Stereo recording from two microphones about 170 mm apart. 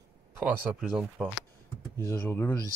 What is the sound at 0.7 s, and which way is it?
Speech, 5° right (ahead or behind).